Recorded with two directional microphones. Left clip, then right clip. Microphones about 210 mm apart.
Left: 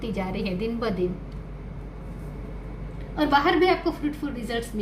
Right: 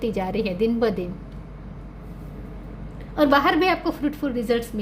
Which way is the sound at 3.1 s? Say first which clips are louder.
Right 3 dB; 55° right (ahead or behind).